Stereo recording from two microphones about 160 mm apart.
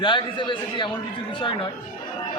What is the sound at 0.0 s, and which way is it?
Speech, 30° left (ahead or behind).